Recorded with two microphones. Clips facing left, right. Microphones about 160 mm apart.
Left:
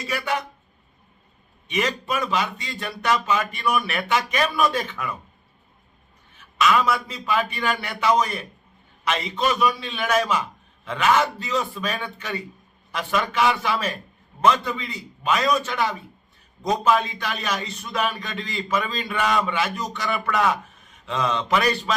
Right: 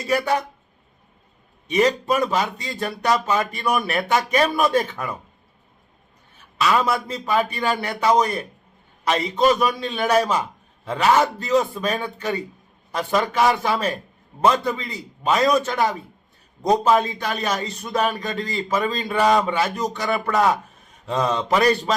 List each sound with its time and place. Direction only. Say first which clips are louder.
0.1 s a man's voice: right 6 dB; 40° right (ahead or behind)
1.6 s a man's voice: right 7 dB; 40° right (ahead or behind)
6.3 s a man's voice: even; 35° right (ahead or behind)